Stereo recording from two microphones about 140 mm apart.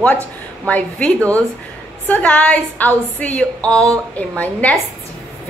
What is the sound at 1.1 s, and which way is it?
Speech, 20° right (ahead or behind).